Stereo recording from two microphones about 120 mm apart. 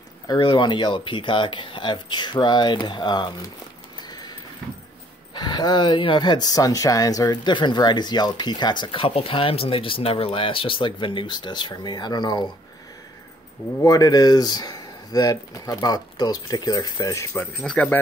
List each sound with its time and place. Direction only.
0.3 s speech: 40° left (ahead or behind)
4.1 s a sound: 35° left (ahead or behind)
5.3 s speech: 35° left (ahead or behind)
13.8 s speech: 30° left (ahead or behind)
17.6 s speech: 10° left (ahead or behind)